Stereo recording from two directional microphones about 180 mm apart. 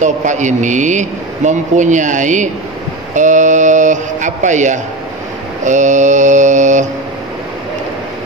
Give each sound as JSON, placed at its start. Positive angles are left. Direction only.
{"t": 0.0, "sound": "speech", "side_deg": -40}